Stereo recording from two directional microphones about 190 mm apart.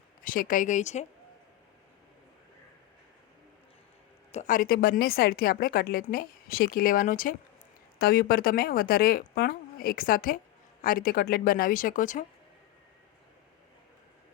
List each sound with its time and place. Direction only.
0.2 s a woman's voice: 45° left (ahead or behind)
4.3 s a woman's voice: 40° left (ahead or behind)